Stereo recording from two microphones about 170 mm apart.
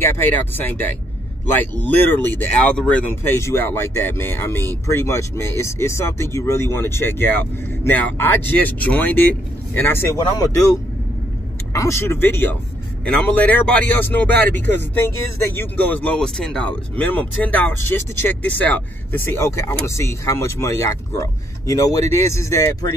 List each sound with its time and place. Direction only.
0.0 s speech: 10° left (ahead or behind)